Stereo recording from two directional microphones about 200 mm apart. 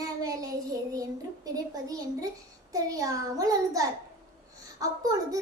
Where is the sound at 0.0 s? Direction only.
15° right (ahead or behind).